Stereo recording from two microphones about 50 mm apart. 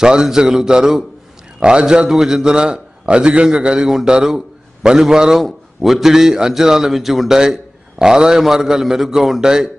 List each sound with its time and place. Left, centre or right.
0.0 s a man's voice: centre